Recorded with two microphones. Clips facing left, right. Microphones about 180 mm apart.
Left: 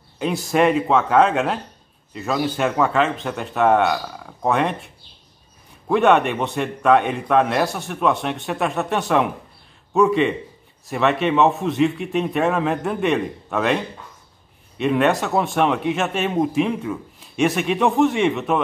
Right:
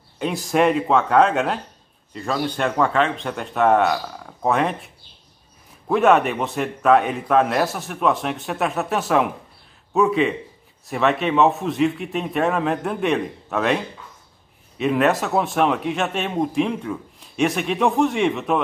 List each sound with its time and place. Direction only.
0.2 s a man's voice: centre (ahead or behind)